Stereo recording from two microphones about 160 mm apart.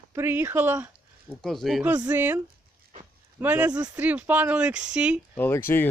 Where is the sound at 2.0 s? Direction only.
10° right (ahead or behind).